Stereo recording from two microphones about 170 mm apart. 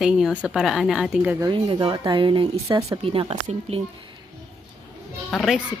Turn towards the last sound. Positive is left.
turn(degrees=0)  # may be behind; listen again after turning